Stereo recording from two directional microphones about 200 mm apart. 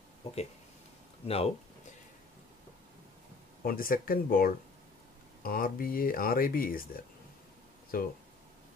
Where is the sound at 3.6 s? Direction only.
45° left (ahead or behind).